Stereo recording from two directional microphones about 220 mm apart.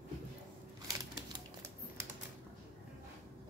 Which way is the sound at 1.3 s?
10° right (ahead or behind).